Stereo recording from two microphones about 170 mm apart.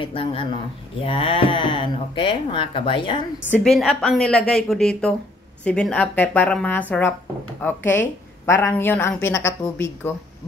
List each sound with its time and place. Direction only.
0.0 s speech: 35° left (ahead or behind)
3.4 s a woman's voice: 5° left (ahead or behind)